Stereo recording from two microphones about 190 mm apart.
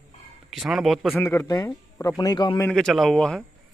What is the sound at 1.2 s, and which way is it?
A man's voice, 15° left (ahead or behind).